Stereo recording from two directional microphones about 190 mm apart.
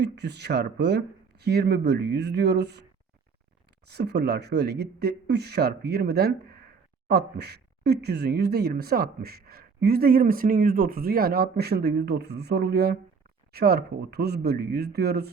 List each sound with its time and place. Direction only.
0.0 s speech: 60° right (ahead or behind)
3.8 s speech: 60° right (ahead or behind)